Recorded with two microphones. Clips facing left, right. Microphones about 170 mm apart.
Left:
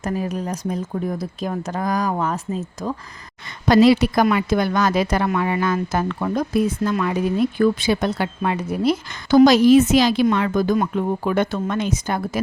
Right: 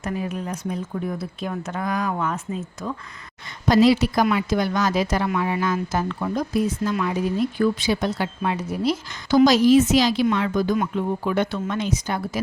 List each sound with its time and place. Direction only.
0.0 s speech: 40° left (ahead or behind)
3.7 s a woman's voice: 60° left (ahead or behind)